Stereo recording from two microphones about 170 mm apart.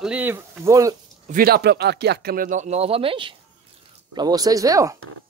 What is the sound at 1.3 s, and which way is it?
Speech, 65° right (ahead or behind).